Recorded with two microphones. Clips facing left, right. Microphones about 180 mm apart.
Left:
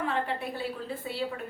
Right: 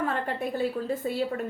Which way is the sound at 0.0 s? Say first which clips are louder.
Right 2 dB; 45° right (ahead or behind).